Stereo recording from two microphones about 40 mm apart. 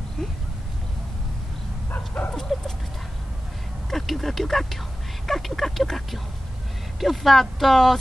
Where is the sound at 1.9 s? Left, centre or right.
Left.